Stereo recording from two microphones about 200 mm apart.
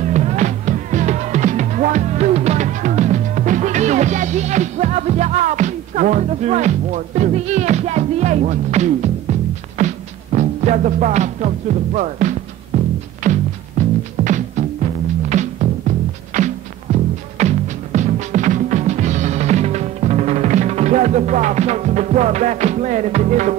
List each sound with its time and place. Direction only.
0.0 s music: 35° right (ahead or behind)